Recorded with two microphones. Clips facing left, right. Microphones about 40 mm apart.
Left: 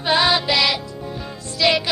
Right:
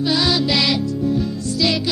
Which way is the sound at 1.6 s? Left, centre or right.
Left.